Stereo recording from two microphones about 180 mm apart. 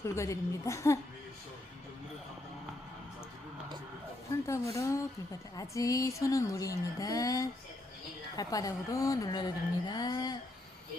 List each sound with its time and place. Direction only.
0.0 s speech: 15° left (ahead or behind)
4.4 s a woman's voice: 15° left (ahead or behind)